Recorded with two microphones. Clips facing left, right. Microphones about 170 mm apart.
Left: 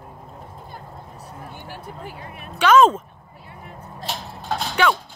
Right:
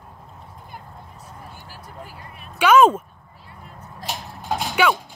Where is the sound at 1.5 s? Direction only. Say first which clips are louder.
Left 5 dB; 60° left (ahead or behind).